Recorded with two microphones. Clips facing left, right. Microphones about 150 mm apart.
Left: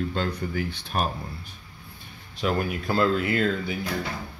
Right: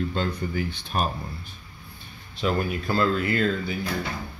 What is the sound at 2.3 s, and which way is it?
Speech, 10° left (ahead or behind).